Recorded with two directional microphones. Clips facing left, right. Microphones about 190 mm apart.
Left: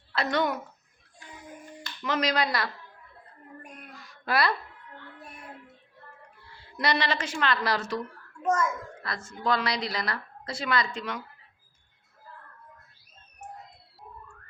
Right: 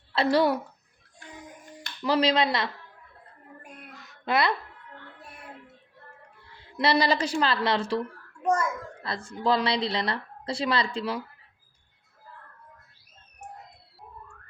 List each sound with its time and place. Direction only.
0.1 s a woman's voice: 30° right (ahead or behind)
2.0 s speech: 30° right (ahead or behind)
3.9 s a sound: 20° right (ahead or behind)
6.7 s a child's voice: 30° right (ahead or behind)